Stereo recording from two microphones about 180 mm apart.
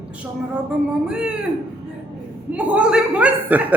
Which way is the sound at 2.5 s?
5° right (ahead or behind).